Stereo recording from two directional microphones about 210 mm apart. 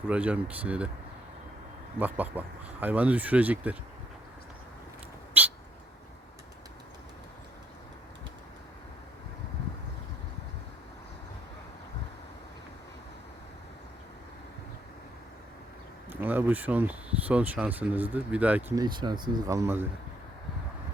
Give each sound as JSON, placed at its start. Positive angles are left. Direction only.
{"t": 0.1, "sound": "speech", "side_deg": -5}
{"t": 2.0, "sound": "speech", "side_deg": -10}
{"t": 5.4, "sound": "bird", "side_deg": -10}
{"t": 16.2, "sound": "speech", "side_deg": -10}
{"t": 18.8, "sound": "speech", "side_deg": -20}